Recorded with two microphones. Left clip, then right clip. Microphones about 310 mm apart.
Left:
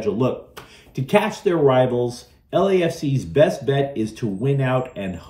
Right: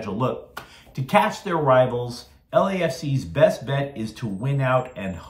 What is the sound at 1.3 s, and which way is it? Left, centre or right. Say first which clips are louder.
Speech: left 2 dB; right.